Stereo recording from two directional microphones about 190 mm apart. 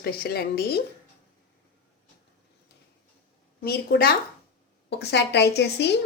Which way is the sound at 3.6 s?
55° left (ahead or behind).